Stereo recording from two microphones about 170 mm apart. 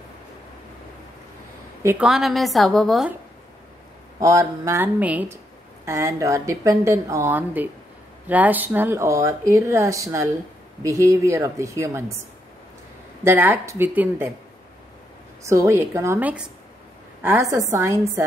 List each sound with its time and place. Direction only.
1.8 s a woman's voice: 15° right (ahead or behind)
2.0 s a woman's voice: centre (ahead or behind)
4.2 s speech: 20° right (ahead or behind)
13.2 s speech: 10° right (ahead or behind)
15.4 s speech: 15° right (ahead or behind)